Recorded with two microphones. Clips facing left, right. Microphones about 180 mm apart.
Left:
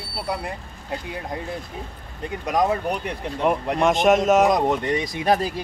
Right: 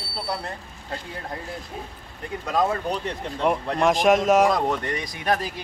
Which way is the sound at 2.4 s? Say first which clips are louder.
Left 2 dB; 15° left (ahead or behind).